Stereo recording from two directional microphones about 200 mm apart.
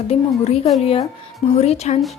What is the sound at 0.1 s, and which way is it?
A woman's voice, 30° left (ahead or behind).